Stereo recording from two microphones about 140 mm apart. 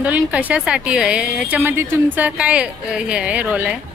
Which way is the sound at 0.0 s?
10° right (ahead or behind).